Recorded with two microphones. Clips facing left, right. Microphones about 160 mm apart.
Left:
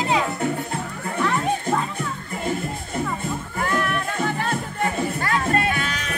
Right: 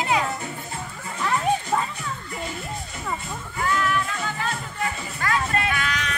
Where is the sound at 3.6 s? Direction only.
50° left (ahead or behind).